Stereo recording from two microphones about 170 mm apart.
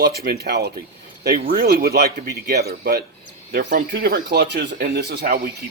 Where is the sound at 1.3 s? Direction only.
60° right (ahead or behind); by 4.7 s 80° right.